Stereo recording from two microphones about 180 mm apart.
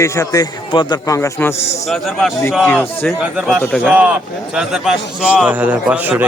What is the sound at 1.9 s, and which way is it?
A man's voice, centre (ahead or behind).